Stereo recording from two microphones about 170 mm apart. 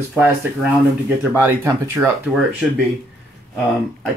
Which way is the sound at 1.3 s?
15° right (ahead or behind).